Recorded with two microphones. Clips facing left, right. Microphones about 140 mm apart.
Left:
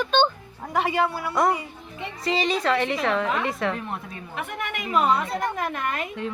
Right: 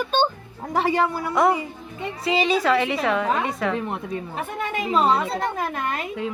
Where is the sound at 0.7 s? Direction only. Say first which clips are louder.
Right 2 dB; 35° right (ahead or behind).